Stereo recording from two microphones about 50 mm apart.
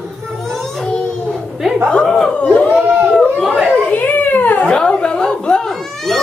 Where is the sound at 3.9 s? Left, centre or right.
Left.